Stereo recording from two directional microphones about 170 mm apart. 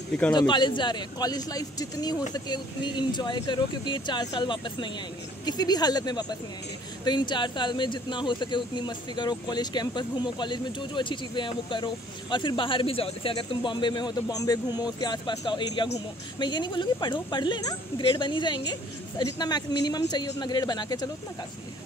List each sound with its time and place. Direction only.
0.3 s speech: 25° left (ahead or behind)